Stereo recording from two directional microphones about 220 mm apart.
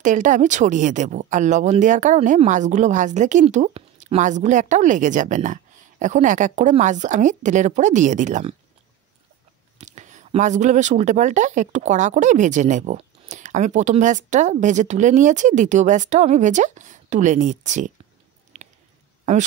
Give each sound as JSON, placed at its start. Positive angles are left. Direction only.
{"t": 0.0, "sound": "speech", "side_deg": -35}
{"t": 9.8, "sound": "speech", "side_deg": -30}
{"t": 18.5, "sound": "a sound", "side_deg": -30}